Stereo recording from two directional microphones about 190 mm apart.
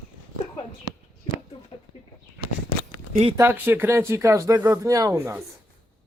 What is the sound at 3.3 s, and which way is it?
Speech, 10° right (ahead or behind).